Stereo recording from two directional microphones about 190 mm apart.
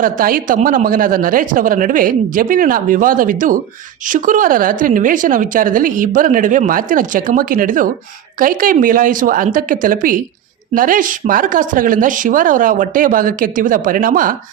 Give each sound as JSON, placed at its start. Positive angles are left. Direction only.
{"t": 0.0, "sound": "a woman's voice", "side_deg": -45}